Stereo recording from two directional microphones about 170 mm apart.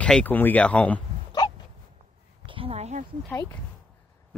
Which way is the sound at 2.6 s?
40° right (ahead or behind).